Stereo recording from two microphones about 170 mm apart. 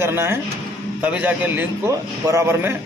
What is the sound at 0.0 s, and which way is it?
Speech, 15° right (ahead or behind).